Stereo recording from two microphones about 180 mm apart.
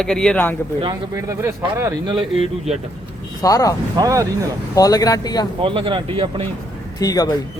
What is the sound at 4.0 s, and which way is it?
Speech, 20° right (ahead or behind).